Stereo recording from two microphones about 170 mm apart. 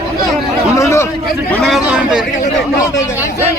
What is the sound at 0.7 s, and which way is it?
Speech, 15° left (ahead or behind).